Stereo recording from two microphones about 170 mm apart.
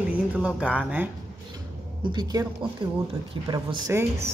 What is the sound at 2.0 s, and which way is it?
Speech, 25° right (ahead or behind).